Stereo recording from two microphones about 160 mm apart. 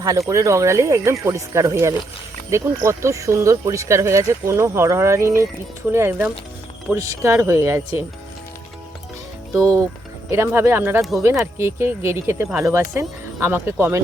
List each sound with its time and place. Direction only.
0.0 s speech: 20° right (ahead or behind)
9.6 s speech: 20° right (ahead or behind)